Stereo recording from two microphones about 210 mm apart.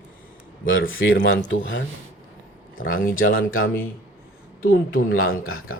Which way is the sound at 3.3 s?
75° left (ahead or behind).